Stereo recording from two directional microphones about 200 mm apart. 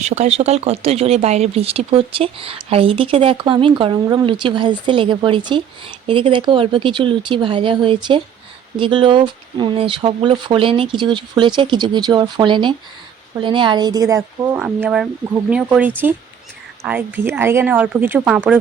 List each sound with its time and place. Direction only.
0.0 s a woman's voice: 35° right (ahead or behind); by 18.5 s 10° right (ahead or behind)